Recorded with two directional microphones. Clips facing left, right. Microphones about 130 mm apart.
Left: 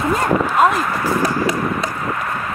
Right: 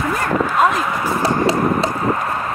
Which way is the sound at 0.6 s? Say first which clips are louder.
Left 1 dB; centre (ahead or behind).